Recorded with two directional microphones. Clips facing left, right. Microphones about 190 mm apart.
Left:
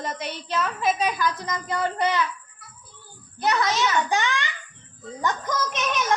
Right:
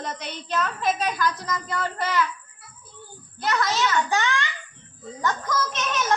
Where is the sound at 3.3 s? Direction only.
15° left (ahead or behind).